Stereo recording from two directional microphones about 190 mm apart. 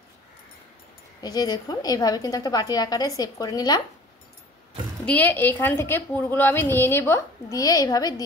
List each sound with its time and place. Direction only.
1.2 s a woman's voice: 20° left (ahead or behind)
5.0 s a woman's voice: 10° left (ahead or behind)